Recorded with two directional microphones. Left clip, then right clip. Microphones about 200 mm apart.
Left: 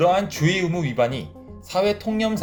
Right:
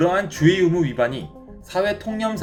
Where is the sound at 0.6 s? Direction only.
40° left (ahead or behind).